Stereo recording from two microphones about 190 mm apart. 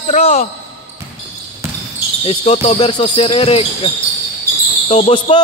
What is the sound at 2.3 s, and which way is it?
Speech, 30° left (ahead or behind).